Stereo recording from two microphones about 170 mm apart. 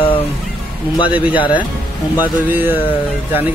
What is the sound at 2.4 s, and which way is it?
Music, 10° right (ahead or behind).